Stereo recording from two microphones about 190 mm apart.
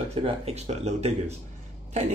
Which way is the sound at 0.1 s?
30° right (ahead or behind).